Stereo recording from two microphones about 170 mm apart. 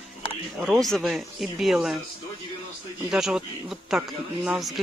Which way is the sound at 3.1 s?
5° right (ahead or behind).